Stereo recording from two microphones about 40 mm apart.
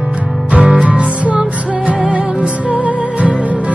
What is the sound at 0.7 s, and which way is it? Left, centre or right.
Music, right.